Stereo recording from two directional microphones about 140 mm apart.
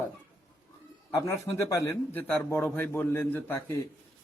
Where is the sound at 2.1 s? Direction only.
15° left (ahead or behind).